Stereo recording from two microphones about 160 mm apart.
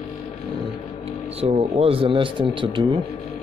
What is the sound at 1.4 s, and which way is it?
Speech, 40° right (ahead or behind).